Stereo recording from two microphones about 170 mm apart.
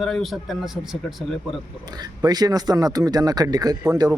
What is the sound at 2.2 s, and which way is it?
Speech, 25° right (ahead or behind).